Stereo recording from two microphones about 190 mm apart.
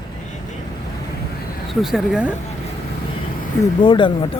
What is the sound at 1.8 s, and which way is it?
Speech, centre (ahead or behind).